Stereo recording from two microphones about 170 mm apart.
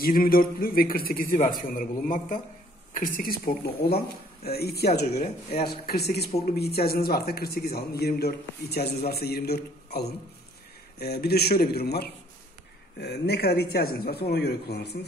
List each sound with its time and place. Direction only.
0.0 s a man's voice: 60° left (ahead or behind)